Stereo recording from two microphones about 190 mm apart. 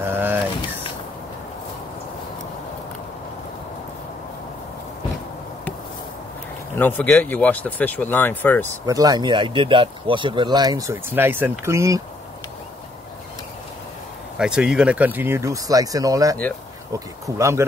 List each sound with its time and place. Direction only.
0.0 s a sound: 10° right (ahead or behind)
6.7 s speech: 10° left (ahead or behind)
8.8 s speech: 20° right (ahead or behind)
14.4 s speech: 5° right (ahead or behind)